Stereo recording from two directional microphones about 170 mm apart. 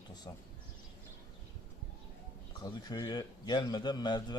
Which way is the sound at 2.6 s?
20° left (ahead or behind).